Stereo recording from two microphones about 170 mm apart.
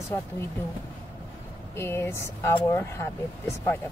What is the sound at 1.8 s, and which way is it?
Speech, 15° left (ahead or behind).